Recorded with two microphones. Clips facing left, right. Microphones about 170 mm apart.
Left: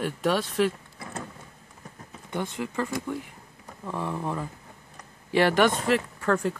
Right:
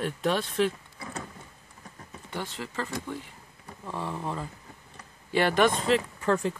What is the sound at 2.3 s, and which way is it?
Speech, 15° left (ahead or behind).